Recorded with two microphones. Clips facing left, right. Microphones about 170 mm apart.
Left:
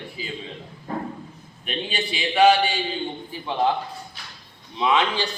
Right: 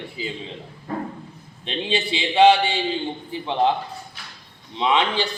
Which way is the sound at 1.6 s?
25° right (ahead or behind).